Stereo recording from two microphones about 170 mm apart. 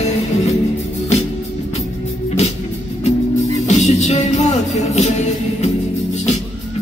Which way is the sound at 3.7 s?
40° left (ahead or behind).